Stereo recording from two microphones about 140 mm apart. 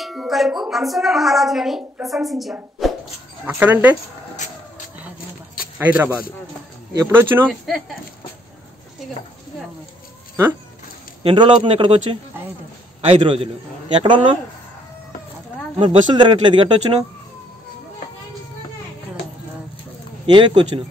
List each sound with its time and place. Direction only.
0.0 s a woman's voice: centre (ahead or behind)
3.4 s speech: 15° right (ahead or behind)
5.8 s speech: 10° right (ahead or behind)
7.4 s a woman's voice: centre (ahead or behind)
11.2 s speech: 35° right (ahead or behind)
15.8 s speech: 35° right (ahead or behind)
20.2 s speech: 35° right (ahead or behind)